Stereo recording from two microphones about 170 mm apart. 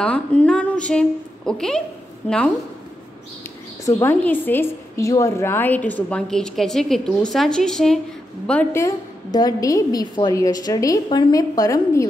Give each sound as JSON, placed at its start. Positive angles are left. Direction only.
{"t": 0.0, "sound": "a woman's voice", "side_deg": 5}
{"t": 3.8, "sound": "a woman's voice", "side_deg": 15}
{"t": 8.8, "sound": "a woman's voice", "side_deg": 20}